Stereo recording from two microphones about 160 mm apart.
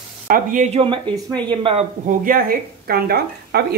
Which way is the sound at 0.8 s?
30° right (ahead or behind).